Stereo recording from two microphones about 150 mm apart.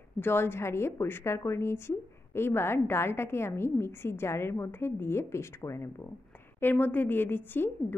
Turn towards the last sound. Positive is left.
turn(degrees=15)  # may be behind; listen again after turning